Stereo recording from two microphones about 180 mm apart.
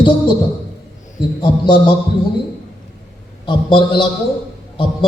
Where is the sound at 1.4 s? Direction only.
25° left (ahead or behind).